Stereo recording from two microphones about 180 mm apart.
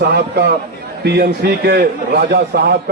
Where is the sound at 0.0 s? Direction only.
70° right (ahead or behind).